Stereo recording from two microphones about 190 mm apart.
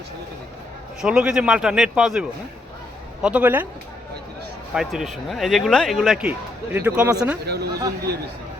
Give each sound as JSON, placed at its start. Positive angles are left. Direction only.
{"t": 1.0, "sound": "speech", "side_deg": -5}
{"t": 4.7, "sound": "speech", "side_deg": -5}
{"t": 7.4, "sound": "speech", "side_deg": -60}